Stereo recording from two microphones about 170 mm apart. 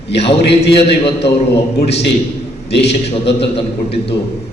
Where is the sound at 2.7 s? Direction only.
85° left.